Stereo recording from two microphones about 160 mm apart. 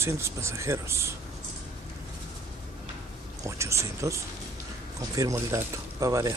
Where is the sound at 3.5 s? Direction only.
20° right (ahead or behind).